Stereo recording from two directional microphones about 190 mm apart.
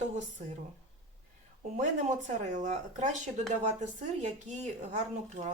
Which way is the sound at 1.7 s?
40° right (ahead or behind).